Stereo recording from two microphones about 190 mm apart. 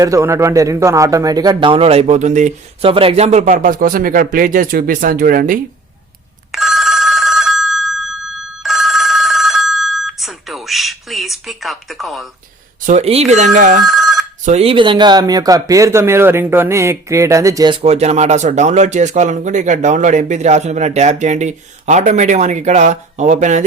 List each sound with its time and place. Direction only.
0.0 s speech: 15° right (ahead or behind); by 5.5 s 50° right (ahead or behind)
6.5 s telephone bell ringing: centre (ahead or behind)
12.8 s speech: 35° right (ahead or behind)
13.8 s telephone bell ringing: centre (ahead or behind)
14.4 s speech: 35° right (ahead or behind)